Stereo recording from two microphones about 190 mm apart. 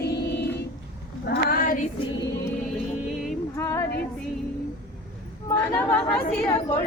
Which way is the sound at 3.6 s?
15° left (ahead or behind).